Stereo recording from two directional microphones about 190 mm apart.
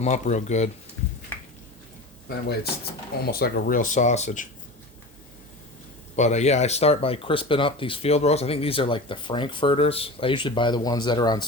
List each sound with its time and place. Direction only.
0.0 s speech: 40° left (ahead or behind)
3.2 s speech: 55° left (ahead or behind); by 4.4 s 40° left (ahead or behind)
6.1 s speech: 35° left (ahead or behind)